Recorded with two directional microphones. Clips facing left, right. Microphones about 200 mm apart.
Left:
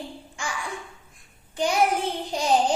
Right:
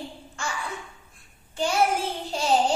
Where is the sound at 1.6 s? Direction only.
15° left (ahead or behind).